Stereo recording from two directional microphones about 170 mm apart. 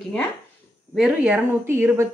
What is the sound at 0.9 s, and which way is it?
Speech, 5° right (ahead or behind).